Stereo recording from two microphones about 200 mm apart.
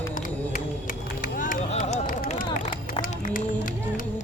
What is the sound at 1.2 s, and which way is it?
Run, 40° left (ahead or behind).